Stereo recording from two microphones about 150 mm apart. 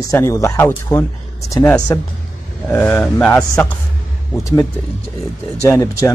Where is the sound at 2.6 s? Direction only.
10° left (ahead or behind).